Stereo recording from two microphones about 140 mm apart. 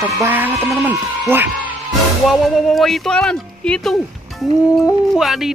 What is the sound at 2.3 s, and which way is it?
Speech, centre (ahead or behind).